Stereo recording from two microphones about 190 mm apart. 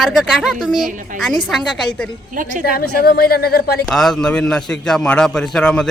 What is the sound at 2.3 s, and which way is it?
Speech, 45° right (ahead or behind).